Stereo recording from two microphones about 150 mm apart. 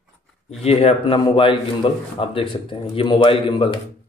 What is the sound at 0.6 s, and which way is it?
Speech, 45° left (ahead or behind).